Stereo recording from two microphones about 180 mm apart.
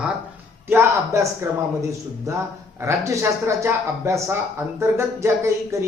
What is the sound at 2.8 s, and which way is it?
A man's voice, 15° right (ahead or behind).